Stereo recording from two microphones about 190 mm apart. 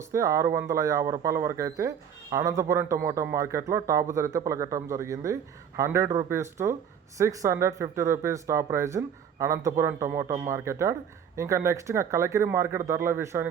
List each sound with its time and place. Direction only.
0.1 s speech: 15° right (ahead or behind)